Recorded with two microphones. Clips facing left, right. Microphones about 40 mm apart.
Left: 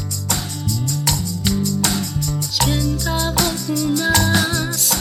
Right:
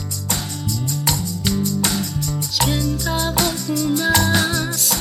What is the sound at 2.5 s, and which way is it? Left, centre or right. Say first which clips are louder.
Music: even; centre.